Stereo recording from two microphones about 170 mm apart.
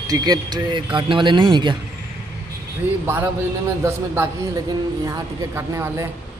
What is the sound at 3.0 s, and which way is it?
A man's voice, 10° right (ahead or behind).